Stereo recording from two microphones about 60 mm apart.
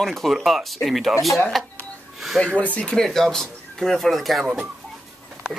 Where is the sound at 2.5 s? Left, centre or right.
Left.